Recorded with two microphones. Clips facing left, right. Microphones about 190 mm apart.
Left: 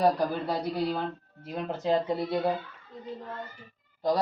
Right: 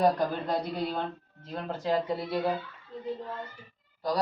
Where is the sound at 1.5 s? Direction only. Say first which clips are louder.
Left 2 dB; 20° left (ahead or behind).